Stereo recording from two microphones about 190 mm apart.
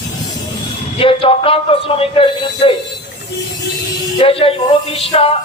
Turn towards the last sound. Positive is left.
turn(degrees=30)  # may be behind; listen again after turning